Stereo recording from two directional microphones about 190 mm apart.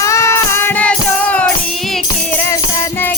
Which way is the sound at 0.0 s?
15° left (ahead or behind).